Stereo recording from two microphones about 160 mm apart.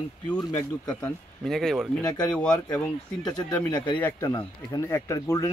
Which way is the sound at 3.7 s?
30° left (ahead or behind).